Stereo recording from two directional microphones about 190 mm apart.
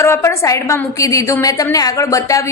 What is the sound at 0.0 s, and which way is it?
A woman's voice, 15° left (ahead or behind).